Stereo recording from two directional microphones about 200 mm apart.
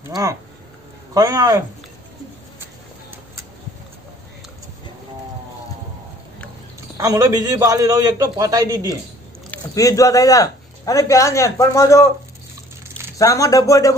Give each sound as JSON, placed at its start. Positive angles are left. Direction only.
{"t": 0.1, "sound": "a man's voice", "side_deg": -15}
{"t": 2.6, "sound": "a sound", "side_deg": -10}
{"t": 7.0, "sound": "a man's voice", "side_deg": -15}
{"t": 9.5, "sound": "a man's voice", "side_deg": 15}
{"t": 13.2, "sound": "a man's voice", "side_deg": 15}